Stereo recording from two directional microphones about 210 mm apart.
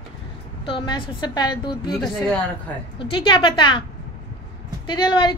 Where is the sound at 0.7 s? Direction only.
25° left (ahead or behind).